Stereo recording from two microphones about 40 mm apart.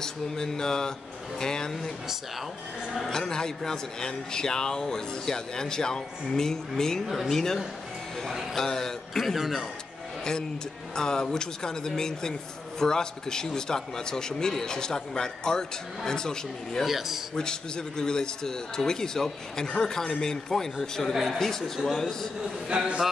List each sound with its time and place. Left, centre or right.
0.0 s a man's voice: centre
3.1 s a man's voice: centre
9.1 s a man's voice: centre
11.0 s a man's voice: centre
16.8 s speech: centre
17.4 s a man's voice: centre